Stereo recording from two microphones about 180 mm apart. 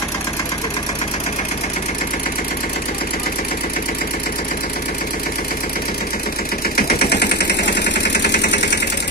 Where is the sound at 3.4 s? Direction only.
50° left (ahead or behind).